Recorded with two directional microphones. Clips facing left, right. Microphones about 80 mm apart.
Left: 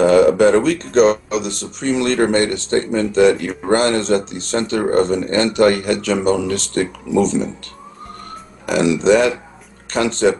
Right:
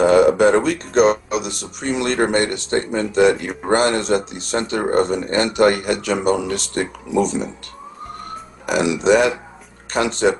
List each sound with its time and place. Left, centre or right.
0.0 s speech: right
8.6 s speech: centre